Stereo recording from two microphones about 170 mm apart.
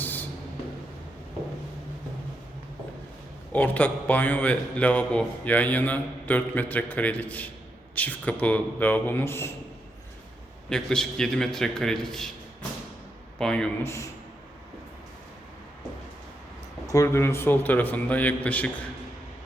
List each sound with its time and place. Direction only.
0.0 s a sound: 10° left (ahead or behind)
3.5 s a man's voice: 10° left (ahead or behind)
10.7 s a man's voice: 5° left (ahead or behind)
13.4 s a man's voice: 5° left (ahead or behind)
13.8 s a man's voice: 15° left (ahead or behind)
16.8 s a man's voice: 20° left (ahead or behind)